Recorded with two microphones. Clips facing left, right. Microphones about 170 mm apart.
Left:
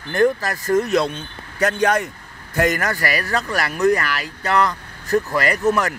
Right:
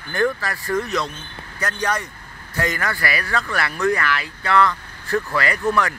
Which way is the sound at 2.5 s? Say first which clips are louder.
Left 5 dB; 50° left (ahead or behind).